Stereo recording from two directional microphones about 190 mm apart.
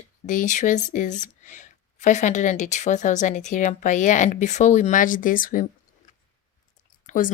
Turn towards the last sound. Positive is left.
turn(degrees=45)  # may be behind; listen again after turning